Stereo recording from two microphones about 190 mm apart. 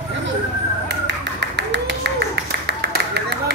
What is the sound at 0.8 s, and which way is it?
Clapping, 65° right (ahead or behind).